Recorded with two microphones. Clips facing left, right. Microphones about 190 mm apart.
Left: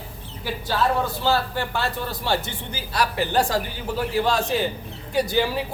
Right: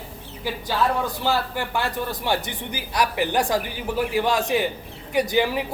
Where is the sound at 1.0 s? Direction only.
15° right (ahead or behind).